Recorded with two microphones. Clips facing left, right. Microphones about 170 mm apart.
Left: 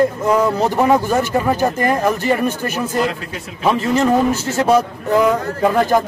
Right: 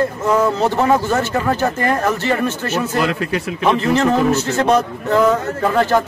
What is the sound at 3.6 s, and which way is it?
Speech, 10° left (ahead or behind).